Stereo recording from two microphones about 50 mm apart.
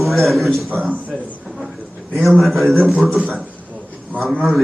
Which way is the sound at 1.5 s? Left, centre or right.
Centre.